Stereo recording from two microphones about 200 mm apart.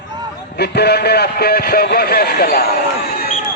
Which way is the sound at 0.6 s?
55° left (ahead or behind).